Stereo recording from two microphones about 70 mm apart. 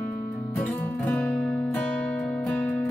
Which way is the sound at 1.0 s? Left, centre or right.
Centre.